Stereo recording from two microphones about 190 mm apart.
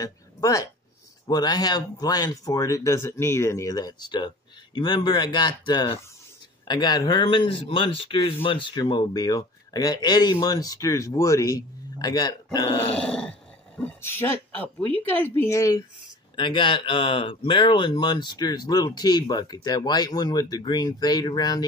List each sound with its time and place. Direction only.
0.0 s speech: 15° left (ahead or behind)
12.9 s speech: 5° left (ahead or behind)
16.3 s speech: 25° left (ahead or behind)